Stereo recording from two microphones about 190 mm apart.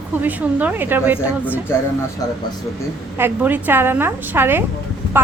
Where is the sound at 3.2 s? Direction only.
10° right (ahead or behind).